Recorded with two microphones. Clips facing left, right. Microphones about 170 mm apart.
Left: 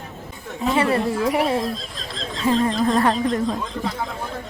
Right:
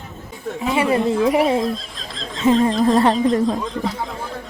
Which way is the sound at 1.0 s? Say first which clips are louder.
Right 4 dB; 20° right (ahead or behind).